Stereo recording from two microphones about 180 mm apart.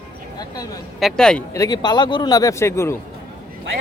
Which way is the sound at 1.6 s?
20° left (ahead or behind).